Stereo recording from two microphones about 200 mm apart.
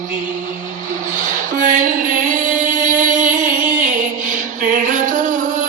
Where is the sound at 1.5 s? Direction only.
40° right (ahead or behind).